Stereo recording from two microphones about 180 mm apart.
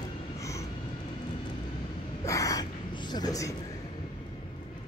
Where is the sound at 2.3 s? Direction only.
20° left (ahead or behind).